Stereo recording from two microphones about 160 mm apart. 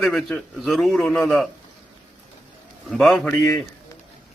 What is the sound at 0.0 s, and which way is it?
A man's voice, centre (ahead or behind).